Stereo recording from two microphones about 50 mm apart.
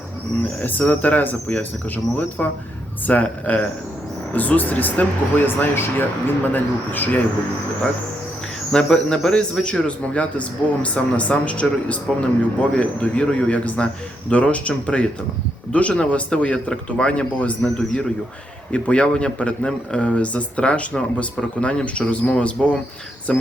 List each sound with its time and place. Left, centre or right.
0.6 s speech: left
2.4 s speech: left
8.7 s speech: centre
18.7 s speech: left